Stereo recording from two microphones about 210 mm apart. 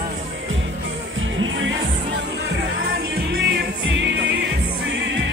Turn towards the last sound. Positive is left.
turn(degrees=-55)  # may be behind; listen again after turning